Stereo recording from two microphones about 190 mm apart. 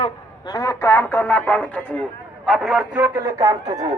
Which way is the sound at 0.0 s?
20° left (ahead or behind).